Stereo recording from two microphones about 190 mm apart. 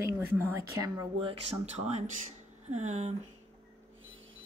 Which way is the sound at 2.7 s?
35° right (ahead or behind).